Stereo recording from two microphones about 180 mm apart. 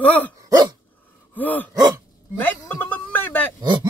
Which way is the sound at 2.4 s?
10° left (ahead or behind).